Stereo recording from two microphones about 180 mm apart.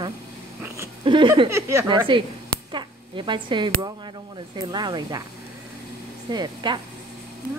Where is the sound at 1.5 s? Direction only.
15° right (ahead or behind).